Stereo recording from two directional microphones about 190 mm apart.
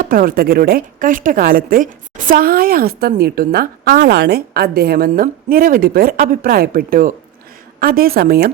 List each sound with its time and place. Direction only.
0.0 s a woman's voice: 50° right (ahead or behind)